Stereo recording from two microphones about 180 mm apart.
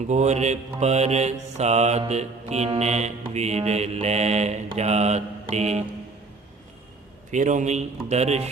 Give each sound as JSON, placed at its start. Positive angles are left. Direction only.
{"t": 0.1, "sound": "mantra", "side_deg": -40}
{"t": 7.3, "sound": "mantra", "side_deg": -40}